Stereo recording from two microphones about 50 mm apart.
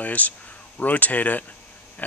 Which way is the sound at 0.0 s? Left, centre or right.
Left.